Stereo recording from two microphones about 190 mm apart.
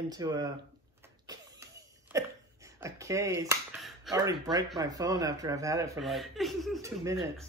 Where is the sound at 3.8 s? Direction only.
Centre (ahead or behind).